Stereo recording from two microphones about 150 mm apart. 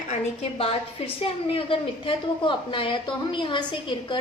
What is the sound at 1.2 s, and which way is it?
A woman's voice, 40° left (ahead or behind).